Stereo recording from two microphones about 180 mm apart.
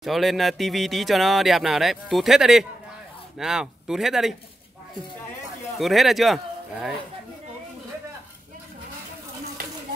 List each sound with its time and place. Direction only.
0.0 s speech: centre (ahead or behind)
5.8 s speech: centre (ahead or behind)
9.6 s a sound: 55° right (ahead or behind)